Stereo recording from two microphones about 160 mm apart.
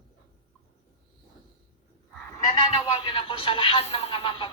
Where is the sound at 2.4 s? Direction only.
30° left (ahead or behind).